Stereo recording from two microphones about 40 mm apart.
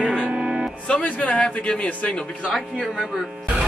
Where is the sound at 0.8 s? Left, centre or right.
Left.